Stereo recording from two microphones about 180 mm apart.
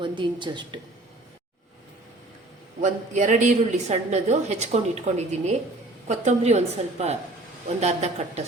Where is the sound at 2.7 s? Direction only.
45° right (ahead or behind).